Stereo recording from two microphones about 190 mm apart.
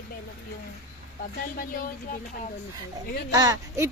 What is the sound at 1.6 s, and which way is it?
Speech, 45° left (ahead or behind).